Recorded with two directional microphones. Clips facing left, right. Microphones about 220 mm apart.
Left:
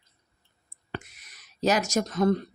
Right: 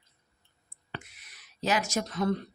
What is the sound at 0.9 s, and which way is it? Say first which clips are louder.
Speech: left 5 dB; 45° left (ahead or behind).